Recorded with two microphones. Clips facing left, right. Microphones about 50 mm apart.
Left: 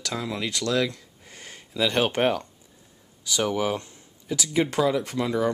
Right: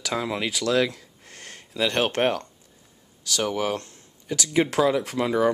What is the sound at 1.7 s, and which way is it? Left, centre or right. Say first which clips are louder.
Speech: even; centre.